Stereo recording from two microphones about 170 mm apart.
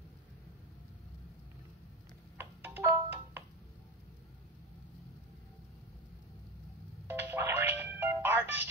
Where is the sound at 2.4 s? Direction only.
10° right (ahead or behind).